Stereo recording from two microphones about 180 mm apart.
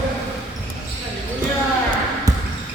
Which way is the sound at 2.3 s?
20° right (ahead or behind).